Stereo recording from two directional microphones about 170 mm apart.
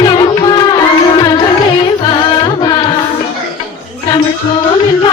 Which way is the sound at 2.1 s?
30° left (ahead or behind).